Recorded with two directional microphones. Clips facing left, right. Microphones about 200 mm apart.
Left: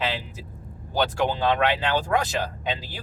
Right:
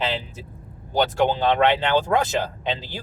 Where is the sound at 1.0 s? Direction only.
20° right (ahead or behind).